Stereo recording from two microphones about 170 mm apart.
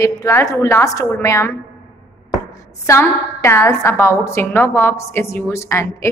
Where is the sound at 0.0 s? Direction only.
15° left (ahead or behind).